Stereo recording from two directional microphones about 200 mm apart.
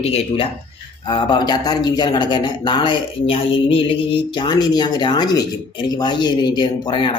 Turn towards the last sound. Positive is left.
turn(degrees=25)  # may be behind; listen again after turning